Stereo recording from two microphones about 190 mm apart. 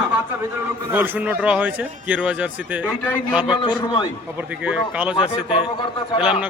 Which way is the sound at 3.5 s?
25° left (ahead or behind).